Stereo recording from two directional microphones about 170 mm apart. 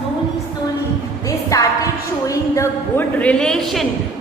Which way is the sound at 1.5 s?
20° left (ahead or behind).